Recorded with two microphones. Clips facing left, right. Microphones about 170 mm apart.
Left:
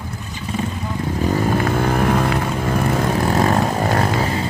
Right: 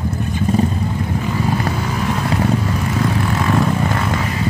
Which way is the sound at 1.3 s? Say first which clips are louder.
Left 3 dB; 50° left (ahead or behind).